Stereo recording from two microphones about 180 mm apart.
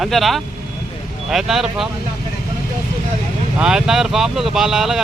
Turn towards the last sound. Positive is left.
turn(degrees=-5)  # may be behind; listen again after turning